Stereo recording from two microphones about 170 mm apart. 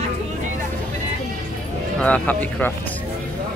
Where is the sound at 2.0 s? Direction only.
10° left (ahead or behind).